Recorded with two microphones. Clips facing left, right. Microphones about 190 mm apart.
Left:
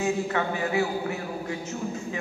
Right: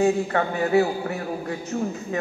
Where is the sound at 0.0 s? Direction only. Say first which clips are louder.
Right 5 dB; 40° right (ahead or behind).